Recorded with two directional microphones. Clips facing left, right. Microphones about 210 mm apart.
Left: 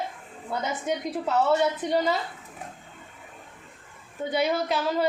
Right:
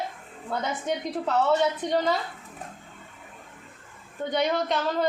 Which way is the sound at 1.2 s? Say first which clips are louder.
Even; 5° left (ahead or behind).